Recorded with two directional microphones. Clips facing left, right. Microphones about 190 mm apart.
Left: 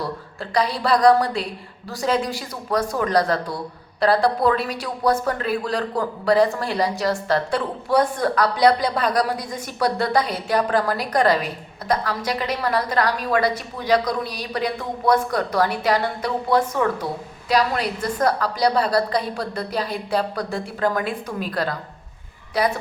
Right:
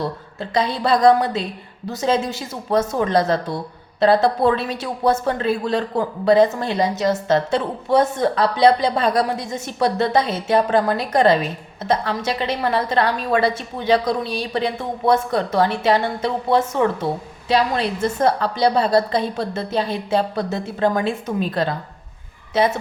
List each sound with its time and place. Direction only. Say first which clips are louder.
0.5 s speech: right 1 dB; 25° right (ahead or behind)